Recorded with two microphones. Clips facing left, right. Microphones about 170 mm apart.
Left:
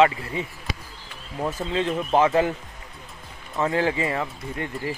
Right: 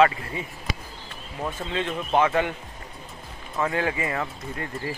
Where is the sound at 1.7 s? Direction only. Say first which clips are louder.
Left 3 dB; 30° left (ahead or behind).